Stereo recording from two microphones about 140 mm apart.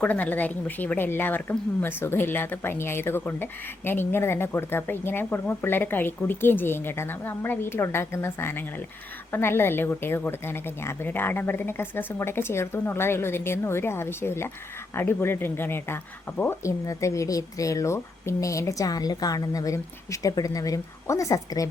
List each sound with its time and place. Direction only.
0.0 s a woman's voice: 10° left (ahead or behind)